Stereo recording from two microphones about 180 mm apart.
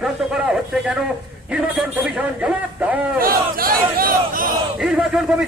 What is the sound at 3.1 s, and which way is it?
Speech, 55° right (ahead or behind).